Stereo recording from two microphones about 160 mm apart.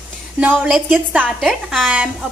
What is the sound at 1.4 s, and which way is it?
Speech, centre (ahead or behind).